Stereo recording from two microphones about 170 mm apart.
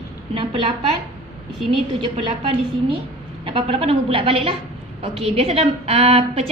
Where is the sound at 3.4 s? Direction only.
30° right (ahead or behind).